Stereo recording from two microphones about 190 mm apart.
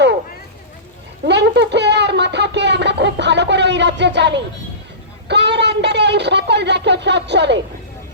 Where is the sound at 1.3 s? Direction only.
65° right (ahead or behind).